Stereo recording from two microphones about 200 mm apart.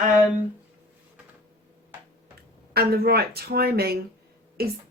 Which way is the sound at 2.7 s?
50° right (ahead or behind).